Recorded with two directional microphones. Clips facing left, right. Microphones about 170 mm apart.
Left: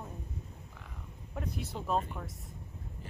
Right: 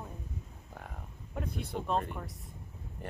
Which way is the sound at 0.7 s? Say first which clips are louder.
Right 5 dB; 50° right (ahead or behind).